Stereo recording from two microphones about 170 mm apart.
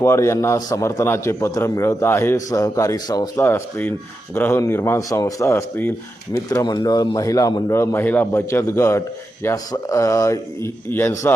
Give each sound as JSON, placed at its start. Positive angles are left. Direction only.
{"t": 0.0, "sound": "a man's voice", "side_deg": 15}
{"t": 3.3, "sound": "a man's voice", "side_deg": 10}